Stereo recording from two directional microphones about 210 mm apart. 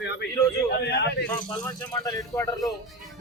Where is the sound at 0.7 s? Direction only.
50° left (ahead or behind).